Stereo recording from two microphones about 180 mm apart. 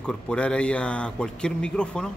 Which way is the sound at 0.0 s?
5° left (ahead or behind).